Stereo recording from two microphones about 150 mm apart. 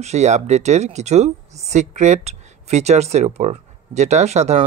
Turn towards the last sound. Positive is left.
turn(degrees=-50)  # may be behind; listen again after turning